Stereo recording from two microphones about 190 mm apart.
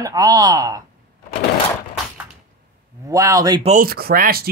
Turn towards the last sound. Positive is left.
turn(degrees=-50)  # may be behind; listen again after turning